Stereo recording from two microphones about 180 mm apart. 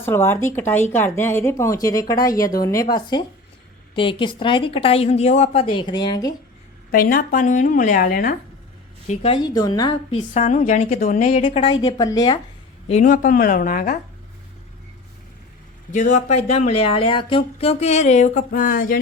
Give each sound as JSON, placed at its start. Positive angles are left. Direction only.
{"t": 0.0, "sound": "a woman's voice", "side_deg": 15}
{"t": 6.9, "sound": "speech", "side_deg": 50}
{"t": 9.0, "sound": "a woman's voice", "side_deg": 30}
{"t": 10.3, "sound": "speech", "side_deg": 40}
{"t": 11.8, "sound": "a woman's voice", "side_deg": 20}
{"t": 12.9, "sound": "speech", "side_deg": 45}
{"t": 15.9, "sound": "speech", "side_deg": 45}